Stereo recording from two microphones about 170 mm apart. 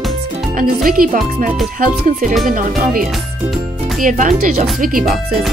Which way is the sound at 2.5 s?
55° right (ahead or behind).